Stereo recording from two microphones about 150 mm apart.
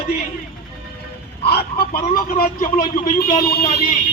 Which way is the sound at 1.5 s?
90° left.